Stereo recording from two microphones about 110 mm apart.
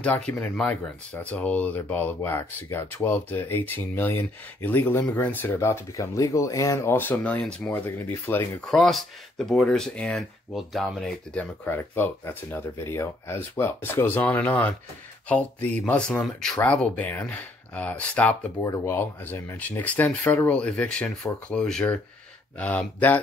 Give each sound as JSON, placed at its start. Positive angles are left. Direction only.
{"t": 0.0, "sound": "speech", "side_deg": 15}
{"t": 8.6, "sound": "speech", "side_deg": 0}
{"t": 11.6, "sound": "speech", "side_deg": 20}